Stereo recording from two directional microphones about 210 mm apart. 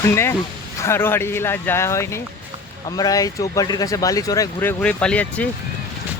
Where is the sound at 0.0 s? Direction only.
10° left (ahead or behind).